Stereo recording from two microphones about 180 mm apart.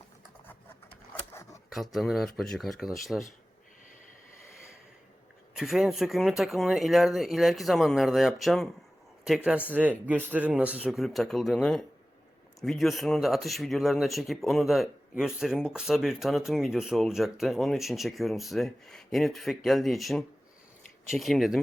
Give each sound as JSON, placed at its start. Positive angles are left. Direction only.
{"t": 1.3, "sound": "camera", "side_deg": 15}
{"t": 1.7, "sound": "speech", "side_deg": 0}
{"t": 5.5, "sound": "speech", "side_deg": 0}